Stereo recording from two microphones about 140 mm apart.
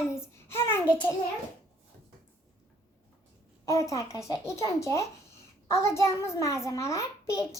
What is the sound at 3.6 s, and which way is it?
A child's voice, 20° left (ahead or behind).